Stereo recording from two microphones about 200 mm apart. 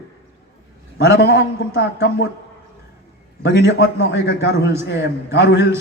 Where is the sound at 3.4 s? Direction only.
60° left (ahead or behind).